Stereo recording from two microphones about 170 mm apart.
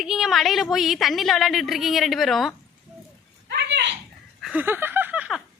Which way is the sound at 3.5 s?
90° right.